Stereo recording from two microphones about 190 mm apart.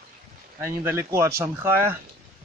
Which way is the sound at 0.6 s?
10° right (ahead or behind).